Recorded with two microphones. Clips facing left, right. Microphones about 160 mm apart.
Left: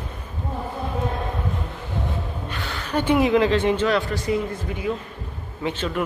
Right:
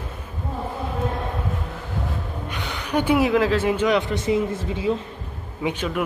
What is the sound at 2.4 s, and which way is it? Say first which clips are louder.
Speech: even; 15° right (ahead or behind).